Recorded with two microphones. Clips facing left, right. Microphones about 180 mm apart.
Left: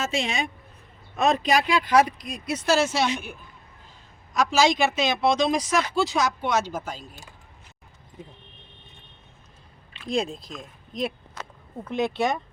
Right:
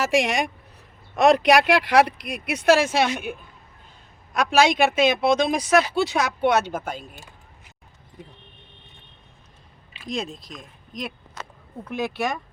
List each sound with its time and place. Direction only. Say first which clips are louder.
0.0 s speech: right 6 dB; 85° right; by 3.3 s 55° right (ahead or behind)
4.4 s speech: right 2 dB; 60° right (ahead or behind)
10.1 s speech: left 3 dB; 30° left (ahead or behind)